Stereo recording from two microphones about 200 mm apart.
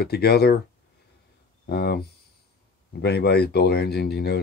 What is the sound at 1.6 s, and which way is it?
Speech, 55° left (ahead or behind).